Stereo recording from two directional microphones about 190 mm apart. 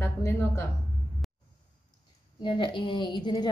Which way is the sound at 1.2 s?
Centre (ahead or behind).